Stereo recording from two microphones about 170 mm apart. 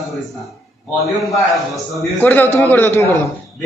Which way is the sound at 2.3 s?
10° left (ahead or behind).